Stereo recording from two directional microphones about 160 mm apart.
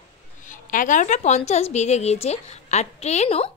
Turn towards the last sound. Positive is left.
turn(degrees=40)  # may be behind; listen again after turning